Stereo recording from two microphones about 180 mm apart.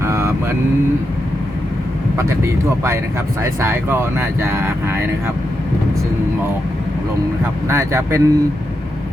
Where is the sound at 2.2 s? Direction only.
15° right (ahead or behind).